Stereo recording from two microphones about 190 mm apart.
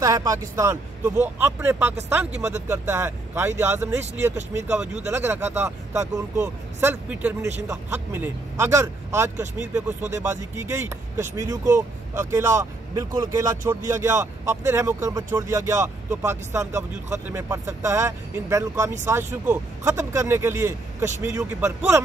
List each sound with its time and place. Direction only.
0.0 s speech: 20° right (ahead or behind)